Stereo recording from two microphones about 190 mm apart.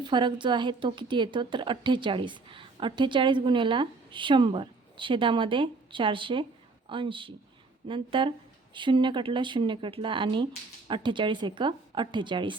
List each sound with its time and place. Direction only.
0.0 s a woman's voice: 25° right (ahead or behind)